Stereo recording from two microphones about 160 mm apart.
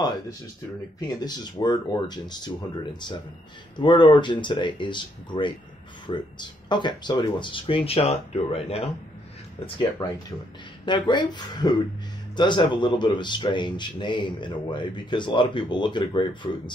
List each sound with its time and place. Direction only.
0.9 s speech: 25° left (ahead or behind)
10.9 s speech: 30° left (ahead or behind)